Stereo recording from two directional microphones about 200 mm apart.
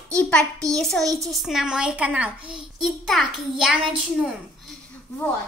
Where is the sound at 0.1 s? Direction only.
5° left (ahead or behind).